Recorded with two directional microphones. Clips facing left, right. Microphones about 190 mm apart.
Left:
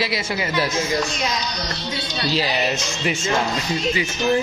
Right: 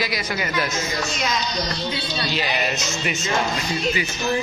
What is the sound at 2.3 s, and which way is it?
Speech, 35° left (ahead or behind).